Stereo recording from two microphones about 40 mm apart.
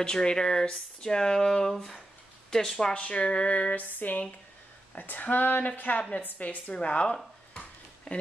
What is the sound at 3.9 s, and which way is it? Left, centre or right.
A woman's voice, left.